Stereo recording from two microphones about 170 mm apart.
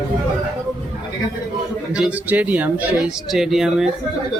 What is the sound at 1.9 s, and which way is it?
A man's voice, 10° right (ahead or behind).